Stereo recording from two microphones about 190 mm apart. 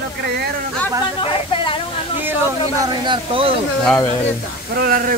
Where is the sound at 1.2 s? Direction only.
25° left (ahead or behind).